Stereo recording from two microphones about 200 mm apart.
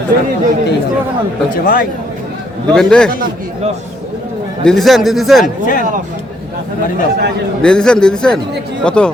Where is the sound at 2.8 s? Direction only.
5° left (ahead or behind).